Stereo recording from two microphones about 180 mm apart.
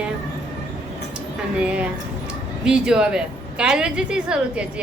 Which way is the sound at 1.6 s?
5° right (ahead or behind).